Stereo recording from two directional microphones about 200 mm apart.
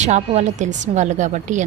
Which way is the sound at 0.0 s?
35° right (ahead or behind).